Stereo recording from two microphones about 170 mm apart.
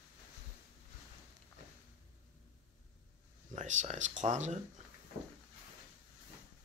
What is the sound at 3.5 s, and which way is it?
Speech, 45° right (ahead or behind).